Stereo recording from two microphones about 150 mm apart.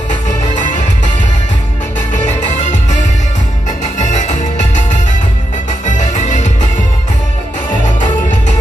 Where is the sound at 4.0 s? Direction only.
55° left (ahead or behind).